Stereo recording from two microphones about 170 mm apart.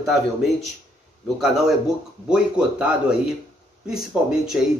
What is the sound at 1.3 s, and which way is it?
Speech, centre (ahead or behind).